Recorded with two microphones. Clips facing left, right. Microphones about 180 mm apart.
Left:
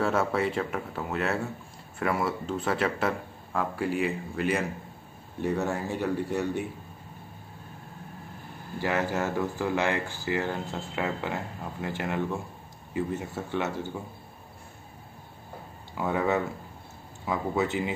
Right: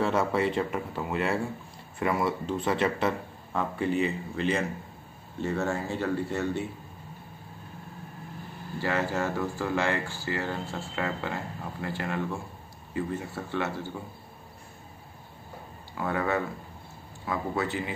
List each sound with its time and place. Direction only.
0.0 s speech: centre (ahead or behind)
8.8 s a man's voice: 15° left (ahead or behind)
16.0 s a man's voice: 20° left (ahead or behind)